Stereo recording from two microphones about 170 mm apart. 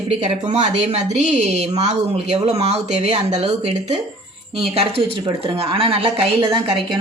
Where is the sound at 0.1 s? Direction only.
45° right (ahead or behind).